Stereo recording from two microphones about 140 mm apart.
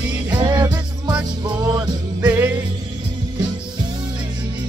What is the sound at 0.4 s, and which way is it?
Music, 30° right (ahead or behind).